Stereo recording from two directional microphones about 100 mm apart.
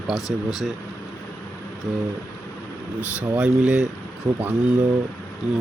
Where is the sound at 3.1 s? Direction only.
15° right (ahead or behind).